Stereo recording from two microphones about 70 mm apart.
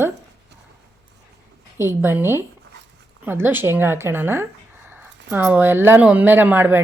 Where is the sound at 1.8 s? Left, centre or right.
Right.